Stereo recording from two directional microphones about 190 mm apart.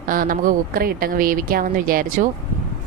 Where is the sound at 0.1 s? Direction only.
45° right (ahead or behind).